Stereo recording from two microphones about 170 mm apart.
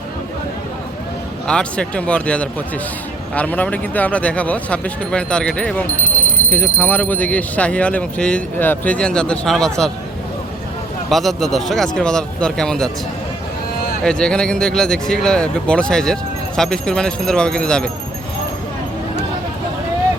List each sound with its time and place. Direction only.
1.5 s speech: 5° left (ahead or behind)
6.0 s alarm: 50° left (ahead or behind)
6.7 s speech: 10° left (ahead or behind)
11.1 s speech: centre (ahead or behind)
14.0 s speech: 5° left (ahead or behind)